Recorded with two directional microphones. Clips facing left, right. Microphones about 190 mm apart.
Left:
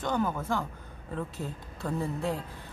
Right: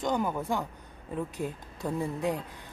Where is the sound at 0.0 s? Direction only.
15° right (ahead or behind).